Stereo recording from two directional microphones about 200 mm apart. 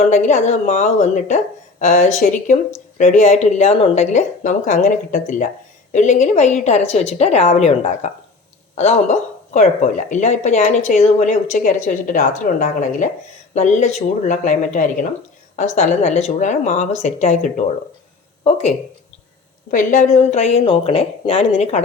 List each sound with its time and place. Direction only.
0.0 s speech: 35° left (ahead or behind)
19.7 s speech: 40° left (ahead or behind)